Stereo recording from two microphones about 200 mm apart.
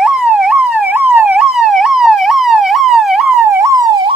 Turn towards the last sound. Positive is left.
turn(degrees=-15)  # may be behind; listen again after turning